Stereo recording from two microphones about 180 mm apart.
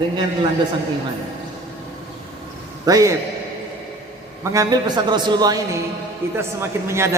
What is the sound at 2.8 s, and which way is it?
Speech, 20° right (ahead or behind).